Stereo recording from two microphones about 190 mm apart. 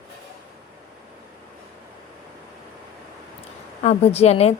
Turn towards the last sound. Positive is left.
turn(degrees=35)  # may be behind; listen again after turning